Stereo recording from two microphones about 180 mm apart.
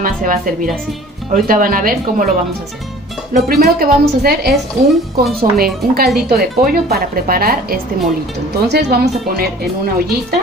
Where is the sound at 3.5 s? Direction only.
55° right (ahead or behind).